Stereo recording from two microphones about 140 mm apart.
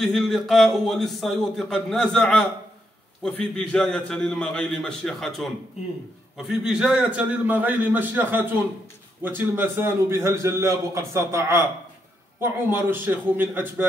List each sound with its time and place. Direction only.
0.0 s a man's voice: centre (ahead or behind)